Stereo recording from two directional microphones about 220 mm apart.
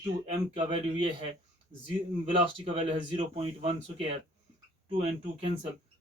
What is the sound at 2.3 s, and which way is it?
Speech, 25° right (ahead or behind).